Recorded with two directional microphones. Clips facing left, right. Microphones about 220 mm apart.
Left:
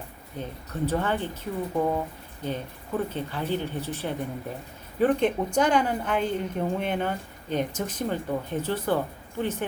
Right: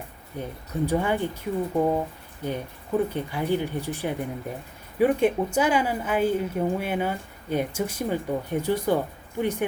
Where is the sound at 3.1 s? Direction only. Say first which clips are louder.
Right 3 dB; 15° right (ahead or behind).